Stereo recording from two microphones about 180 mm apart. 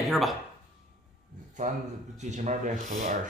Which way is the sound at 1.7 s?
45° right (ahead or behind).